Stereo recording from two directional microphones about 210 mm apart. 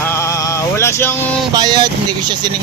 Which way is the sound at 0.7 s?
15° left (ahead or behind).